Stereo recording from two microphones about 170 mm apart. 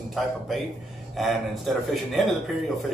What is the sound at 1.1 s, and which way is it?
Speech, centre (ahead or behind).